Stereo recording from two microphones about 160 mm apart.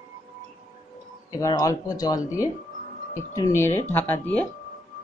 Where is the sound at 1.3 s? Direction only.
20° left (ahead or behind).